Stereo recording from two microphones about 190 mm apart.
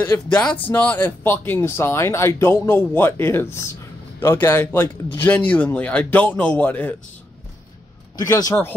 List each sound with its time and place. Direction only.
0.0 s speech: 10° left (ahead or behind)
8.2 s speech: 20° left (ahead or behind)